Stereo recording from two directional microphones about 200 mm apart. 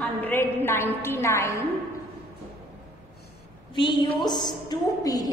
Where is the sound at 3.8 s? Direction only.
20° left (ahead or behind).